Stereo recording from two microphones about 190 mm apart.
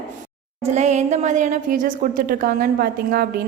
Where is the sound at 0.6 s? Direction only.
35° right (ahead or behind).